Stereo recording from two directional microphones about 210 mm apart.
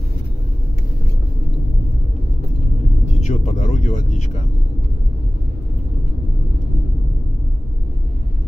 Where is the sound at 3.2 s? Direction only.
35° left (ahead or behind).